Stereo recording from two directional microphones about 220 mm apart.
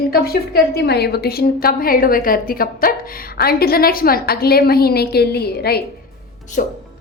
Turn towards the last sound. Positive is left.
turn(degrees=40)  # may be behind; listen again after turning